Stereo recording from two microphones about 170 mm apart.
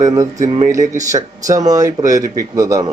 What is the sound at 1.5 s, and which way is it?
Speech, 20° right (ahead or behind).